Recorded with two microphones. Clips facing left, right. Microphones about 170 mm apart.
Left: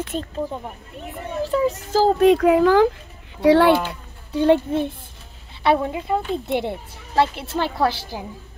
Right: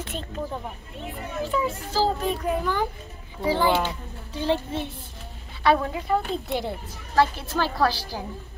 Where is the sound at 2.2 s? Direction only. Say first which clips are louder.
Left 12 dB; 90° left.